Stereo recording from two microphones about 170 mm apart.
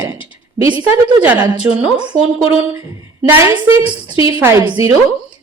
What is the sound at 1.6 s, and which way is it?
Speech, 5° right (ahead or behind).